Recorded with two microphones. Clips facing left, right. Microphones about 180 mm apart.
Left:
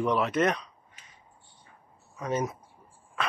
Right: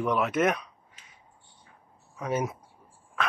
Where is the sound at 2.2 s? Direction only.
5° right (ahead or behind).